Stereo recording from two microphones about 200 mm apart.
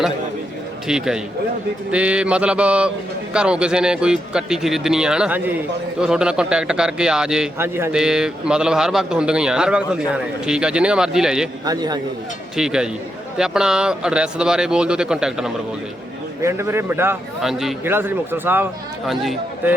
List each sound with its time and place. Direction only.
0.9 s a man's voice: 5° right (ahead or behind)
11.6 s a man's voice: 20° right (ahead or behind)
12.5 s a man's voice: 5° right (ahead or behind)